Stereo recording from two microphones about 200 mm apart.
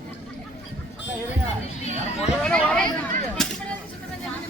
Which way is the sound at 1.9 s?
35° left (ahead or behind).